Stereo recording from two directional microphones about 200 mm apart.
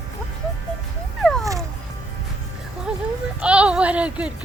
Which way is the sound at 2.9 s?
5° right (ahead or behind).